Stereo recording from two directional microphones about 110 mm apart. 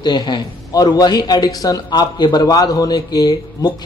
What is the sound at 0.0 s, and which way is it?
A man's voice, 40° left (ahead or behind).